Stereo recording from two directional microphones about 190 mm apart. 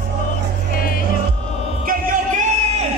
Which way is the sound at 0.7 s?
50° left (ahead or behind).